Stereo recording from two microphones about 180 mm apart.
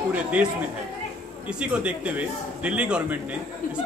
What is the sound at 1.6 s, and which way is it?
A man's voice, 5° right (ahead or behind).